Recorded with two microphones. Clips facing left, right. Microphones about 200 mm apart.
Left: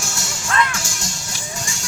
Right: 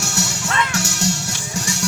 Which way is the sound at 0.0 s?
65° right (ahead or behind).